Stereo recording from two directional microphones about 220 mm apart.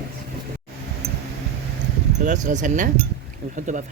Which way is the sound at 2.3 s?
35° right (ahead or behind).